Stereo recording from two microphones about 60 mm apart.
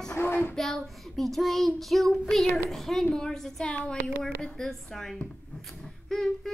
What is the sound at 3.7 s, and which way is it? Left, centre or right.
Speech, left.